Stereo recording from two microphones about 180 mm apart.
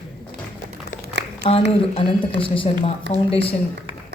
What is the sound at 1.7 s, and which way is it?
A woman's voice, 30° left (ahead or behind).